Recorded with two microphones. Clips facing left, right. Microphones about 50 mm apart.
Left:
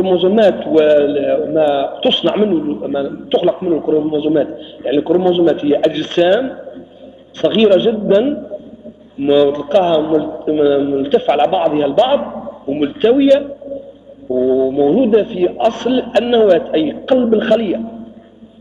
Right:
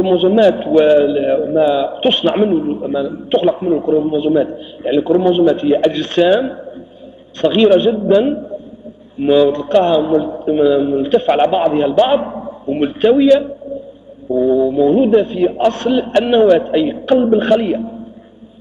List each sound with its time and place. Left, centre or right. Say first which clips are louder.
0.0 s a man's voice: even; centre